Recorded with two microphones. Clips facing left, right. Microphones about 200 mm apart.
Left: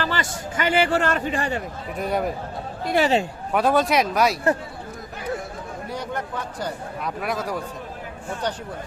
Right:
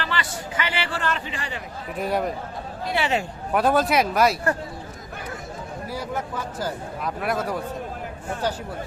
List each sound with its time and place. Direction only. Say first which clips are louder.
0.0 s speech: left 3 dB; 45° left (ahead or behind)
2.0 s a man's voice: even; centre (ahead or behind)
2.8 s speech: left 5 dB; 45° left (ahead or behind)
3.5 s a man's voice: even; centre (ahead or behind)
5.9 s a man's voice: even; 5° right (ahead or behind)